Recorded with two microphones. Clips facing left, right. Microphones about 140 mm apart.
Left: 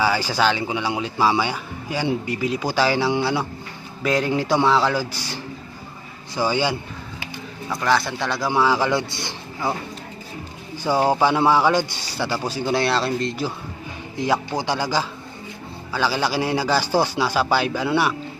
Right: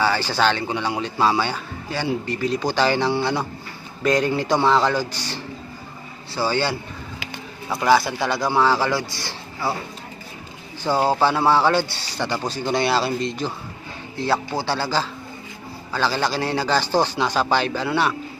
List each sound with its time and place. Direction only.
0.0 s speech: 10° left (ahead or behind)
7.9 s speech: 5° right (ahead or behind)
8.5 s speech: 10° left (ahead or behind)
10.8 s speech: 10° left (ahead or behind)
14.2 s speech: 15° left (ahead or behind)